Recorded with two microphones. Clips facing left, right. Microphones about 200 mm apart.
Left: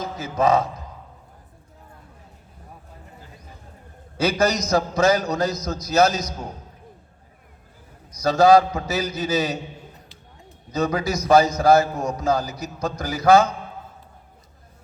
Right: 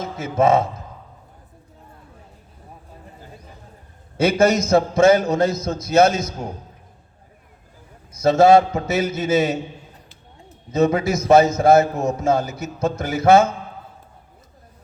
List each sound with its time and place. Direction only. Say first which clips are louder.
0.0 s a man's voice: right 3 dB; 25° right (ahead or behind)
4.2 s a man's voice: right 4 dB; 25° right (ahead or behind)
8.1 s a man's voice: right 2 dB; 25° right (ahead or behind)
10.7 s a man's voice: right 5 dB; 25° right (ahead or behind)